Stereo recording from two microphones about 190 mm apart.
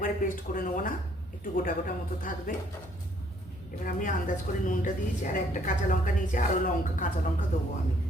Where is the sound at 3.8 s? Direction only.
45° left (ahead or behind).